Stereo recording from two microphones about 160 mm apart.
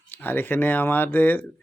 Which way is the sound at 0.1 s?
10° left (ahead or behind).